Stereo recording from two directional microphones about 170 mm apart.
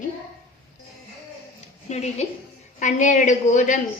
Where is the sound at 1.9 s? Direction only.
40° left (ahead or behind).